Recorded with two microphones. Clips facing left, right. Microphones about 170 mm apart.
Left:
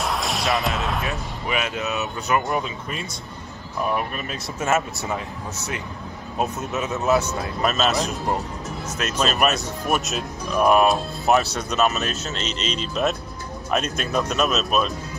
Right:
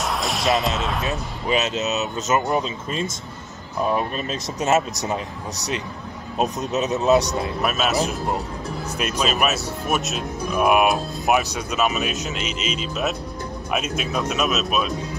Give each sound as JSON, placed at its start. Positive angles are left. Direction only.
{"t": 0.0, "sound": "basketball bounce", "side_deg": 0}
{"t": 1.0, "sound": "speech", "side_deg": -25}
{"t": 6.3, "sound": "speech", "side_deg": -20}
{"t": 7.6, "sound": "speech", "side_deg": -5}
{"t": 8.9, "sound": "speech", "side_deg": -10}